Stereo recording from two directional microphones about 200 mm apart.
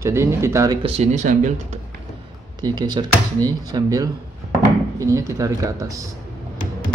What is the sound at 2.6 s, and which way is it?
Speech, 20° right (ahead or behind).